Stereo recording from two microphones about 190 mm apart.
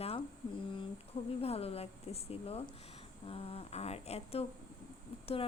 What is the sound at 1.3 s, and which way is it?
Speech, 30° left (ahead or behind).